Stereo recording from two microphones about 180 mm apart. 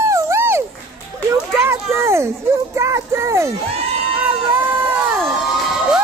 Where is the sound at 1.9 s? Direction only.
15° right (ahead or behind).